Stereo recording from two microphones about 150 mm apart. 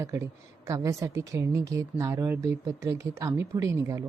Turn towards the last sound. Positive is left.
turn(degrees=-20)  # may be behind; listen again after turning